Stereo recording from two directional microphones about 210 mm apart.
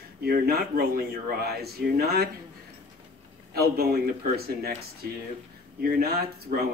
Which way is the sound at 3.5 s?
45° right (ahead or behind).